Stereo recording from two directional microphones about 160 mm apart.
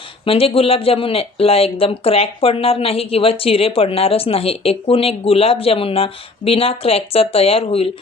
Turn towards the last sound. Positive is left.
turn(degrees=35)  # may be behind; listen again after turning